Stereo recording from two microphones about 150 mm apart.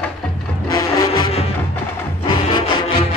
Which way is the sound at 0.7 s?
20° left (ahead or behind).